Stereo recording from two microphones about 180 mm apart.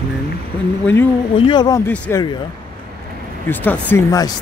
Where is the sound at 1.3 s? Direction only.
25° left (ahead or behind).